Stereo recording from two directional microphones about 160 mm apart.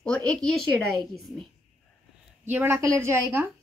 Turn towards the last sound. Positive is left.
turn(degrees=-15)  # may be behind; listen again after turning